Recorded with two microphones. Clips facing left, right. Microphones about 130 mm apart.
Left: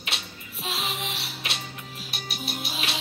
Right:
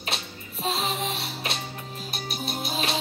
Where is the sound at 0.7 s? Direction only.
30° right (ahead or behind).